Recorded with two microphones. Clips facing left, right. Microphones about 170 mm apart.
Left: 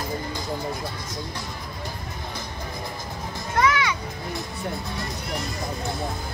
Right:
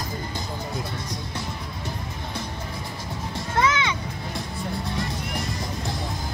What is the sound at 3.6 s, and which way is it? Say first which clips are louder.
Music: left 1 dB; 25° right (ahead or behind).